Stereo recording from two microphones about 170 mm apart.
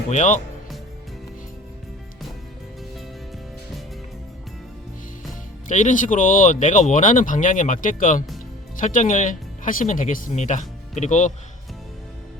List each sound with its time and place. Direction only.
0.1 s speech: 45° left (ahead or behind)
5.6 s speech: 45° left (ahead or behind)